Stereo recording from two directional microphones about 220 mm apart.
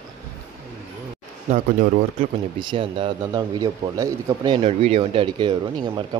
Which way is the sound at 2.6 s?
20° right (ahead or behind).